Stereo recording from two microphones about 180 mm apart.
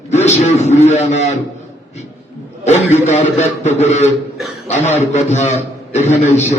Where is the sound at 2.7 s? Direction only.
40° left (ahead or behind).